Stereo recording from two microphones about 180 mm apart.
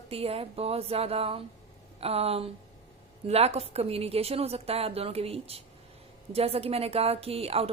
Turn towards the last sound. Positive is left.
turn(degrees=-35)  # may be behind; listen again after turning